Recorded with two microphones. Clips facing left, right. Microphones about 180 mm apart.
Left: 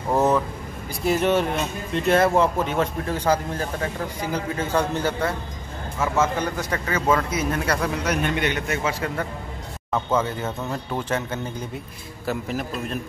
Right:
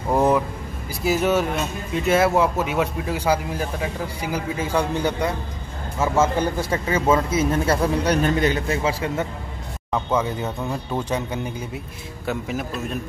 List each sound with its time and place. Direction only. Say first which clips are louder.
0.1 s vehicle: right 1 dB; 10° right (ahead or behind)
1.0 s speech: even; centre (ahead or behind)
5.9 s speech: right 3 dB; 25° right (ahead or behind)
10.1 s speech: right 1 dB; 15° right (ahead or behind)
12.3 s a man's voice: even; centre (ahead or behind)